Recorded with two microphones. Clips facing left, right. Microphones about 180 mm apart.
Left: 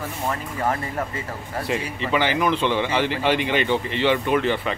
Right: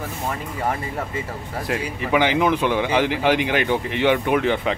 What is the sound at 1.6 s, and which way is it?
Speech, 10° right (ahead or behind).